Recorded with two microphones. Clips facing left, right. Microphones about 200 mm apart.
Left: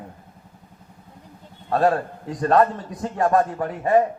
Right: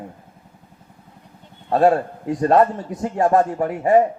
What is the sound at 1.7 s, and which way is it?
A man's voice, 25° right (ahead or behind).